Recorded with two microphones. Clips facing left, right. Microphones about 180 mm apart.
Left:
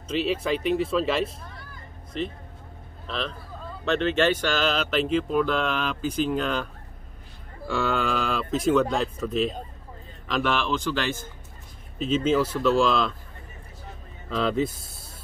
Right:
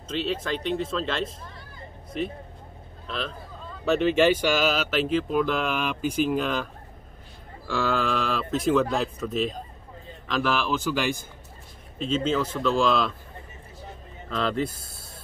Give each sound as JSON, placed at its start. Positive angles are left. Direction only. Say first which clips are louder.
{"t": 0.1, "sound": "speech", "louder": "left 3 dB", "side_deg": 5}
{"t": 3.1, "sound": "speech", "louder": "left 1 dB", "side_deg": 0}
{"t": 12.0, "sound": "speech", "louder": "left 3 dB", "side_deg": 5}
{"t": 14.3, "sound": "speech", "louder": "left 2 dB", "side_deg": 0}